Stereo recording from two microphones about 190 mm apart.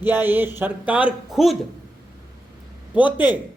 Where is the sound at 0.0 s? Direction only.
10° right (ahead or behind).